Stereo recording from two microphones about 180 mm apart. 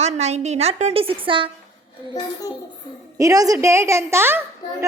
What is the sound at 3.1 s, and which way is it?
A woman's voice, 20° right (ahead or behind).